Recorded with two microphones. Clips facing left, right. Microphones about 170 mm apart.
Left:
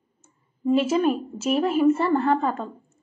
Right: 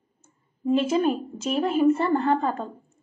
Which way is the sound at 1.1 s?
Centre (ahead or behind).